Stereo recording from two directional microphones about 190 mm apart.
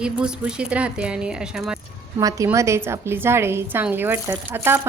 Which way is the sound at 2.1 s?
15° right (ahead or behind).